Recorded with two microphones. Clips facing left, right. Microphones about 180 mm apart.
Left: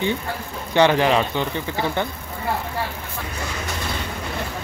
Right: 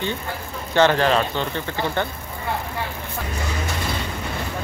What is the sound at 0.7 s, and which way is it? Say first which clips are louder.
Speech: left 1 dB; 15° left (ahead or behind).